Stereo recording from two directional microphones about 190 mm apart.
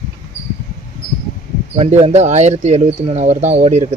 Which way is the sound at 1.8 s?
30° right (ahead or behind).